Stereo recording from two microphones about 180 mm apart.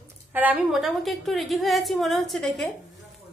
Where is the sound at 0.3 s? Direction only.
10° right (ahead or behind).